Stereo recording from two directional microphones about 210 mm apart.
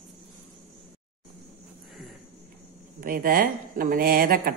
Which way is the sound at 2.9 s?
45° right (ahead or behind).